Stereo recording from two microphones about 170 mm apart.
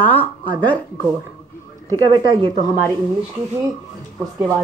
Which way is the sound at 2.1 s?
30° right (ahead or behind).